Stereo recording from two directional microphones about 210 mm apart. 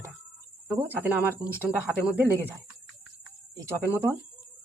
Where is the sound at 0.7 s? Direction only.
10° right (ahead or behind).